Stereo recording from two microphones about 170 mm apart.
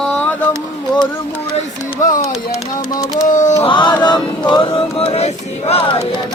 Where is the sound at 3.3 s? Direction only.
45° left (ahead or behind).